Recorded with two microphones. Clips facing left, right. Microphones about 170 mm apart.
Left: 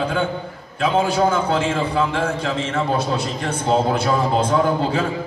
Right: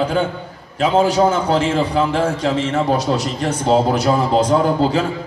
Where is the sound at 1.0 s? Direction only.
35° right (ahead or behind).